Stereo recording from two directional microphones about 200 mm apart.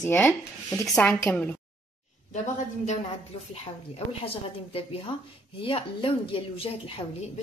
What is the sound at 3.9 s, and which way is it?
A woman's voice, 30° left (ahead or behind).